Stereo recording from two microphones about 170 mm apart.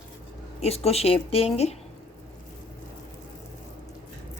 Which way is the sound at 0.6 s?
35° left (ahead or behind).